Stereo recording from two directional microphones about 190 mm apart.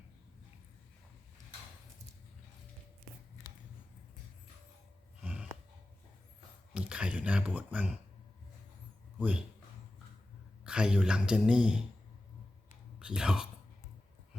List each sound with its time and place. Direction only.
5.2 s a sound: 10° right (ahead or behind)
6.7 s speech: 5° right (ahead or behind)
10.6 s speech: 5° right (ahead or behind)
13.0 s speech: 5° right (ahead or behind)